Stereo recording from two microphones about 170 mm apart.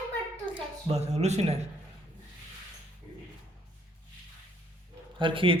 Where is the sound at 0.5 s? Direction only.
40° right (ahead or behind).